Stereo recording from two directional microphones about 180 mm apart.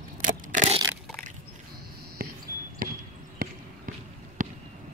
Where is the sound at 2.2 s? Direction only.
55° right (ahead or behind).